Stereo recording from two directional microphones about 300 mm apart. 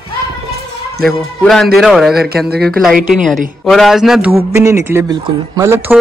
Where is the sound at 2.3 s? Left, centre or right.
Right.